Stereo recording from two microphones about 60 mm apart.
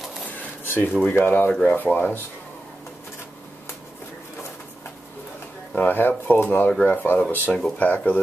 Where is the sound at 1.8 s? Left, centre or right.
Left.